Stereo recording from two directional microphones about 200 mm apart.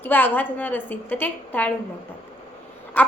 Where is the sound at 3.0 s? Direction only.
5° left (ahead or behind).